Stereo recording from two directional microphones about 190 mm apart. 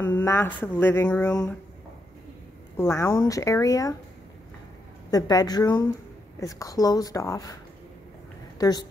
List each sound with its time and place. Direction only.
0.0 s speech: 10° left (ahead or behind)
2.8 s speech: 15° left (ahead or behind)
5.1 s a woman's voice: 20° left (ahead or behind)
8.5 s a woman's voice: 20° left (ahead or behind)